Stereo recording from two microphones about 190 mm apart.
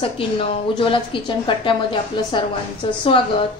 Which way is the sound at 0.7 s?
25° left (ahead or behind).